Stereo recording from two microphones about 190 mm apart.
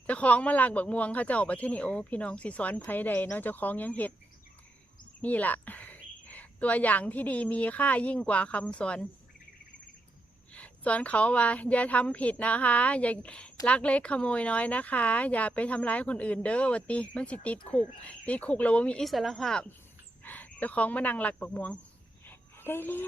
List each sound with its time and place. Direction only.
0.1 s speech: 5° left (ahead or behind)
5.2 s speech: 10° left (ahead or behind)
10.5 s speech: 5° left (ahead or behind)
22.3 s a sound: 10° left (ahead or behind)